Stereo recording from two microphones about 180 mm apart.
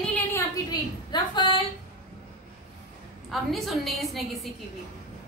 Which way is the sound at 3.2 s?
Centre (ahead or behind).